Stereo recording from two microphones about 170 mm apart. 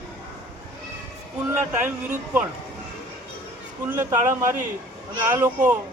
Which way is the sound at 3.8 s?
15° right (ahead or behind).